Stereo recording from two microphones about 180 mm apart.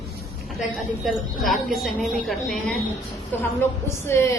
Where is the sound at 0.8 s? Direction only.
Centre (ahead or behind).